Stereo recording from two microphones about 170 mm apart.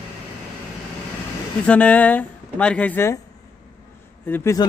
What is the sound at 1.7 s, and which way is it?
Speech, 10° left (ahead or behind).